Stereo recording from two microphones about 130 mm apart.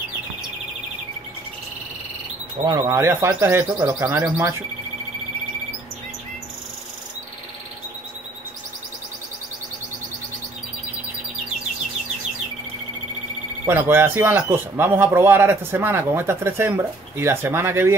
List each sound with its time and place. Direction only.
2.6 s speech: 35° right (ahead or behind)
2.9 s speech: 20° right (ahead or behind)
13.7 s speech: 15° right (ahead or behind)